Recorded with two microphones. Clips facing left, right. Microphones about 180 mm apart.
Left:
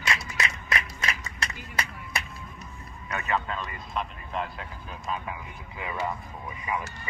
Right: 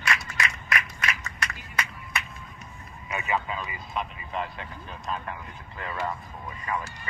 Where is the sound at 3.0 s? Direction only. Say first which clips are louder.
Even; 10° right (ahead or behind).